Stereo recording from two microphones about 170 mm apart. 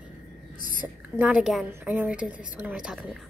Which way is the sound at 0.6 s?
50° left (ahead or behind).